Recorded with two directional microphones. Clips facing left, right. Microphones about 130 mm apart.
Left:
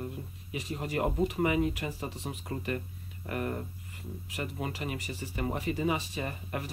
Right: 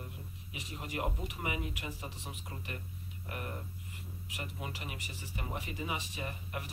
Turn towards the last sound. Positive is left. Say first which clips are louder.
# left 5 dB
turn(degrees=45)  # may be behind; listen again after turning